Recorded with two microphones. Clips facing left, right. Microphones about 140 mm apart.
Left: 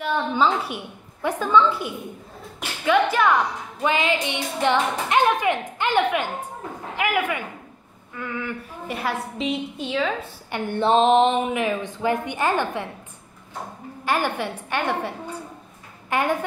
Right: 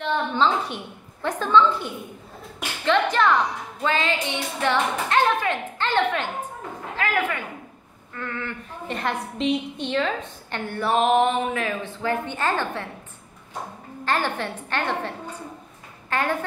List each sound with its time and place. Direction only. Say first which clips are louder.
0.0 s a woman's voice: left 1 dB; 10° left (ahead or behind)
10.7 s a woman's voice: left 3 dB; 25° left (ahead or behind)
14.0 s a woman's voice: left 1 dB; 10° left (ahead or behind)